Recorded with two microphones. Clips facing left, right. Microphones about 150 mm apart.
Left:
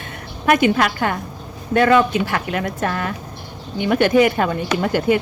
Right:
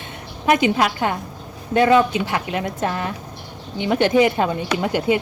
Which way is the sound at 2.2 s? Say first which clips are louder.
Left 1 dB; 20° right (ahead or behind).